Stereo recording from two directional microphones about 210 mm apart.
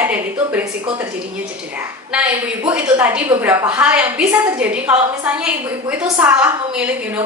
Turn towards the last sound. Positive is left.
turn(degrees=-5)  # may be behind; listen again after turning